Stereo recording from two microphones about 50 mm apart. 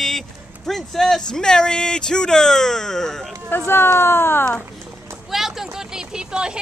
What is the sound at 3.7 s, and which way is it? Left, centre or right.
Speech, left.